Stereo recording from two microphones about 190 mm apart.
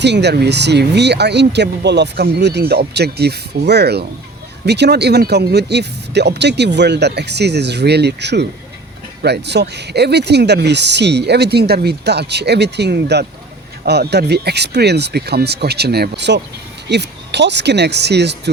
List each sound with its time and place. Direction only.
0.0 s speech: 65° right (ahead or behind)